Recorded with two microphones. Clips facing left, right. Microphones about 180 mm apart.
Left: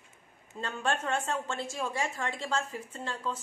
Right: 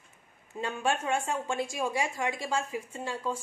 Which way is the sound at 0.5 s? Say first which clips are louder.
Right 2 dB; 10° right (ahead or behind).